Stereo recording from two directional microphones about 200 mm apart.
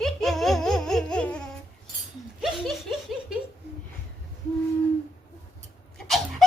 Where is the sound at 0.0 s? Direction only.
Centre (ahead or behind).